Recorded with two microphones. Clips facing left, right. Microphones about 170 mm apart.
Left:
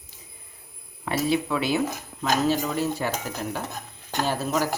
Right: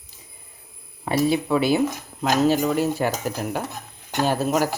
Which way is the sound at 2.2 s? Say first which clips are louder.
Right 4 dB; 50° right (ahead or behind).